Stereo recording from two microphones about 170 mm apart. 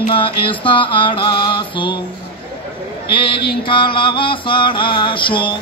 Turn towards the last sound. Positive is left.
turn(degrees=30)  # may be behind; listen again after turning